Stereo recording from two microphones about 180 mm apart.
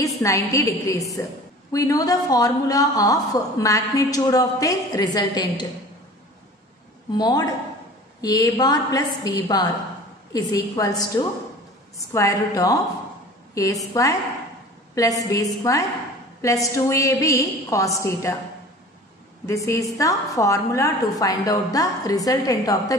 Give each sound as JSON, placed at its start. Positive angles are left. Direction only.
{"t": 0.0, "sound": "a woman's voice", "side_deg": 15}
{"t": 7.2, "sound": "a woman's voice", "side_deg": 20}
{"t": 19.4, "sound": "a woman's voice", "side_deg": 15}